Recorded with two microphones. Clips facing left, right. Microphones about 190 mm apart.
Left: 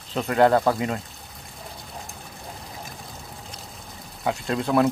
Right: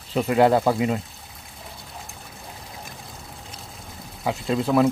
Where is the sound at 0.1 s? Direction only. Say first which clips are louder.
Right 1 dB; 5° right (ahead or behind).